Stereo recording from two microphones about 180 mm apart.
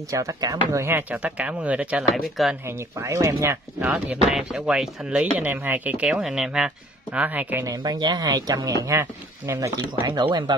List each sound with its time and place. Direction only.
0.1 s speech: 20° right (ahead or behind); by 2.5 s centre (ahead or behind)
3.0 s speech: 15° right (ahead or behind)
4.3 s speech: centre (ahead or behind)
7.7 s speech: 20° right (ahead or behind)